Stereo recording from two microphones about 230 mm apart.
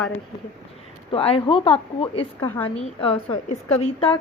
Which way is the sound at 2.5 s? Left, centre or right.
Centre.